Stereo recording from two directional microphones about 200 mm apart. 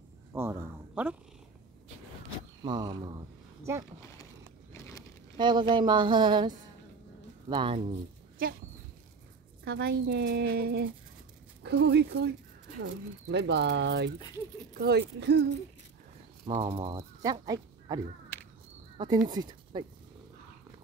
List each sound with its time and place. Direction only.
0.3 s speech: 15° right (ahead or behind)
2.6 s a sound: 20° right (ahead or behind)
4.7 s a sound: 15° left (ahead or behind)
5.4 s speech: 25° right (ahead or behind)
9.7 s speech: 55° right (ahead or behind)
16.4 s speech: 25° right (ahead or behind)